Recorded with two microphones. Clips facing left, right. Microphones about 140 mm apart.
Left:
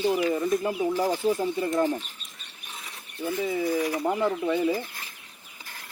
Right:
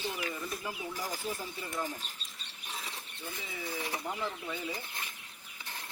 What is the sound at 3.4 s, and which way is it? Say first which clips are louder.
Speech: left 16 dB; 45° left (ahead or behind).